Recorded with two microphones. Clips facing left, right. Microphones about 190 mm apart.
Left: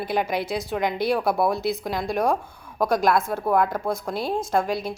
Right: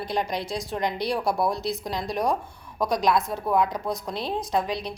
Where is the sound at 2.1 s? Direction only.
55° left (ahead or behind).